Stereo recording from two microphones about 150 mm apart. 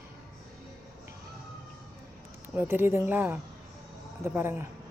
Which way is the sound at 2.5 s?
15° right (ahead or behind).